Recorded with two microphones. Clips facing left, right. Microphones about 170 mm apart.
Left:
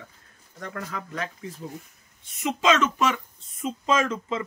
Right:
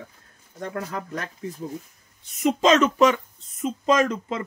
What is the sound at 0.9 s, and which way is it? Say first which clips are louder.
Speech: right 1 dB; 45° right (ahead or behind).